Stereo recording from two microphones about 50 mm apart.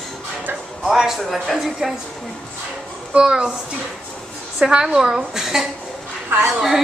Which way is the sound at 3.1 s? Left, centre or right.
Centre.